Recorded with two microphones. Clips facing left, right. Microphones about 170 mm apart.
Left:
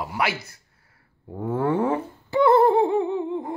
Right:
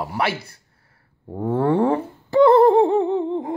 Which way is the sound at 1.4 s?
30° right (ahead or behind).